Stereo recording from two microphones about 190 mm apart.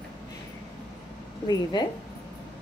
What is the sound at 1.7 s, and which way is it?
Speech, 25° left (ahead or behind).